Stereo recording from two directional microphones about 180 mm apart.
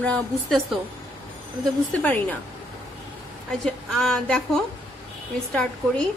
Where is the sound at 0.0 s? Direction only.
5° left (ahead or behind).